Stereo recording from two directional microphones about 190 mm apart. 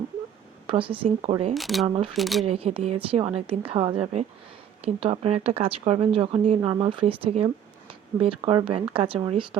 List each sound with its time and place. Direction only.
0.7 s a woman's voice: 30° right (ahead or behind)
1.5 s speech: centre (ahead or behind)
1.9 s a woman's voice: 30° right (ahead or behind)
2.1 s speech: centre (ahead or behind)
2.4 s a woman's voice: 30° right (ahead or behind)